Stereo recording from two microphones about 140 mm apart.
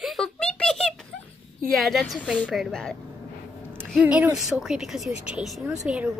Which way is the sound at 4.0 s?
10° right (ahead or behind).